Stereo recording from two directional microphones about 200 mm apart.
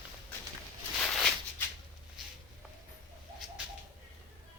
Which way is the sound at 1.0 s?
Centre (ahead or behind).